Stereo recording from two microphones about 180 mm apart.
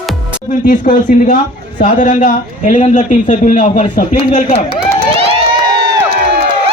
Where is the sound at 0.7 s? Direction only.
50° left (ahead or behind).